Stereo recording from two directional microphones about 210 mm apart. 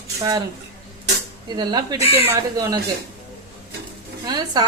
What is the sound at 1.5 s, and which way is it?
Speech, 20° right (ahead or behind).